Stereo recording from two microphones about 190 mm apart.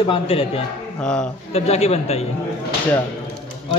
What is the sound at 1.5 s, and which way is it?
Speech, 35° left (ahead or behind).